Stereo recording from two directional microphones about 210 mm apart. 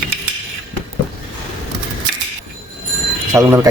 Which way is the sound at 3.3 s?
15° right (ahead or behind).